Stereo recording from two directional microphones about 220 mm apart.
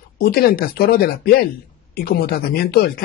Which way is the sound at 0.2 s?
40° left (ahead or behind).